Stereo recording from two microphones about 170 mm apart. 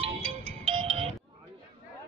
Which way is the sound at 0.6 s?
35° right (ahead or behind).